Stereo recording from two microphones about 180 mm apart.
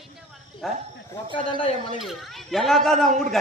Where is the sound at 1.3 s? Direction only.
30° left (ahead or behind).